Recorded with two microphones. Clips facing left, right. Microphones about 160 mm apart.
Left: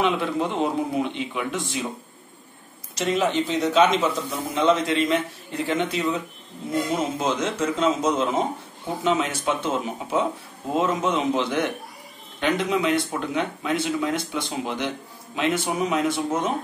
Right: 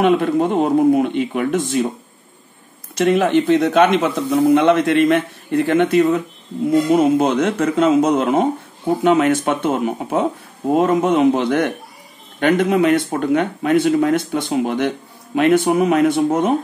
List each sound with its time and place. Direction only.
0.0 s speech: 50° right (ahead or behind)
2.9 s speech: 60° right (ahead or behind)